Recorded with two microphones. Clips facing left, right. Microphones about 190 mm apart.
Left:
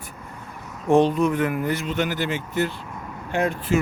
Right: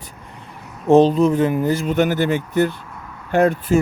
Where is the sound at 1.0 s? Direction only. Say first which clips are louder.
Right 5 dB; 35° right (ahead or behind).